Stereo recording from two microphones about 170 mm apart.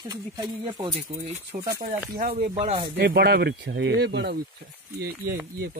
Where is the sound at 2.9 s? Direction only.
65° right (ahead or behind).